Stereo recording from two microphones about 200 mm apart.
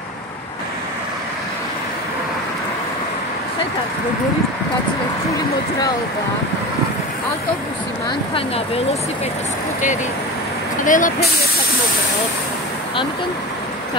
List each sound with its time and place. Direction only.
10.8 s speech: 40° left (ahead or behind)